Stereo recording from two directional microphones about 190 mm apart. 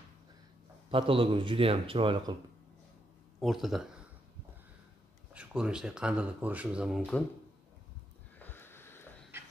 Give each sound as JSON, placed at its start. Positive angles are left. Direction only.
{"t": 0.8, "sound": "speech", "side_deg": -30}
{"t": 3.3, "sound": "speech", "side_deg": 0}
{"t": 5.3, "sound": "speech", "side_deg": -5}
{"t": 8.4, "sound": "a sound", "side_deg": 10}